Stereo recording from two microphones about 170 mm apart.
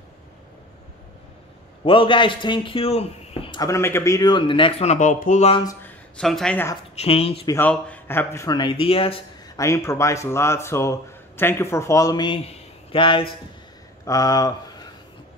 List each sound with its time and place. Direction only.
1.9 s speech: 30° left (ahead or behind)
3.6 s speech: 15° left (ahead or behind); by 5.5 s 45° left (ahead or behind)
5.5 s speech: 25° left (ahead or behind)
5.8 s speech: 5° left (ahead or behind)
7.0 s speech: 35° left (ahead or behind)
7.4 s speech: 10° left (ahead or behind); by 9.2 s 35° left (ahead or behind)
9.6 s speech: 15° left (ahead or behind)